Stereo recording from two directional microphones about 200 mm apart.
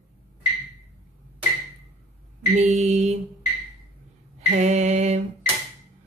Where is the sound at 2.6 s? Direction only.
35° right (ahead or behind).